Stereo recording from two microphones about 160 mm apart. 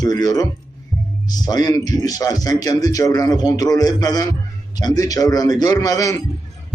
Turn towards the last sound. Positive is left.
turn(degrees=20)  # may be behind; listen again after turning